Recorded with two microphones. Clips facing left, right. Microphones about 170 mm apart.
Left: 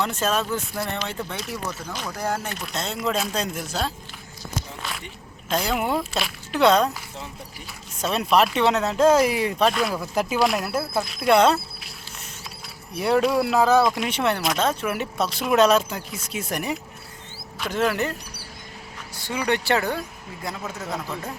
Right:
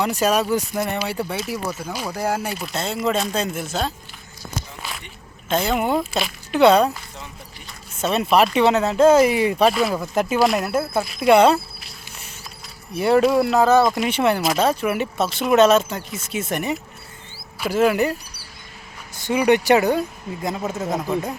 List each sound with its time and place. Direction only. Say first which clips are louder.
0.0 s speech: right 5 dB; 15° right (ahead or behind)
4.8 s a sound: even; centre (ahead or behind)
5.5 s speech: right 3 dB; centre (ahead or behind)
8.0 s speech: right 3 dB; 5° right (ahead or behind)
13.0 s speech: right 4 dB; centre (ahead or behind)
19.3 s speech: right 7 dB; 15° right (ahead or behind)